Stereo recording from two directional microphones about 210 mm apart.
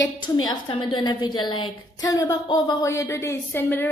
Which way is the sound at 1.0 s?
20° left (ahead or behind).